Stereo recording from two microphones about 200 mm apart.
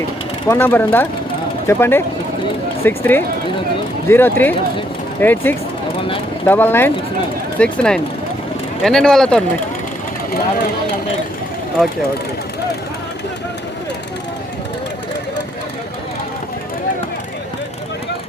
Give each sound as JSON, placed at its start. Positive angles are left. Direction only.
{"t": 0.4, "sound": "speech", "side_deg": 10}